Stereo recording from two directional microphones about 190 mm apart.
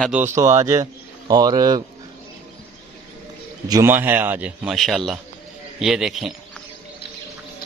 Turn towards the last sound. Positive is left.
turn(degrees=0)  # may be behind; listen again after turning